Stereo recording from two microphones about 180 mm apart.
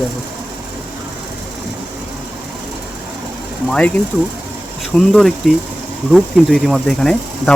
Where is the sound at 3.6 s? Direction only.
5° left (ahead or behind).